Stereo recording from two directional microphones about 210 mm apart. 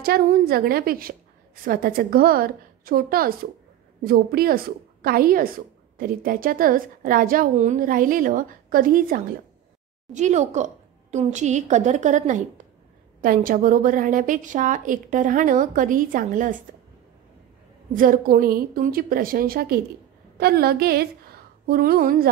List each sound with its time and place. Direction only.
0.0 s a woman's voice: 45° right (ahead or behind)
17.9 s a woman's voice: 40° right (ahead or behind)